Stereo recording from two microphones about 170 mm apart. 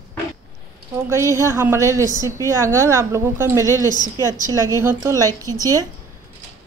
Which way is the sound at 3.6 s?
20° left (ahead or behind).